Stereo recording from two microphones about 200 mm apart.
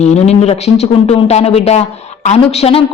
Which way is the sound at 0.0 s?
35° left (ahead or behind).